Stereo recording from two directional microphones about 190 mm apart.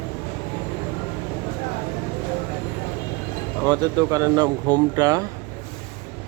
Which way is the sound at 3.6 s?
20° right (ahead or behind).